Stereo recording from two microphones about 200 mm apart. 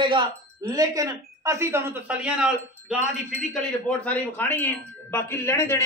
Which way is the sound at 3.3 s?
5° left (ahead or behind).